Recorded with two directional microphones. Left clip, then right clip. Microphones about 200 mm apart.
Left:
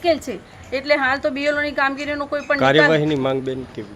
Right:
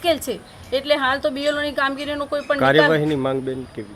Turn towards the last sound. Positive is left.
turn(degrees=5)  # may be behind; listen again after turning